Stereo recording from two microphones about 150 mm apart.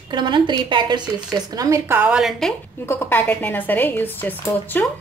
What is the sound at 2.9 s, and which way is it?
A woman's voice, 15° left (ahead or behind).